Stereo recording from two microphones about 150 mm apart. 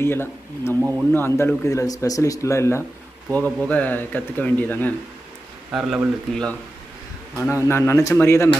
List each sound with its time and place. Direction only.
0.0 s speech: 15° left (ahead or behind)
5.7 s speech: 5° right (ahead or behind)
7.3 s speech: 20° left (ahead or behind)